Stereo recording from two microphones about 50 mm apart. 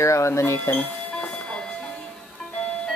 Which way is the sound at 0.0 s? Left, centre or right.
Left.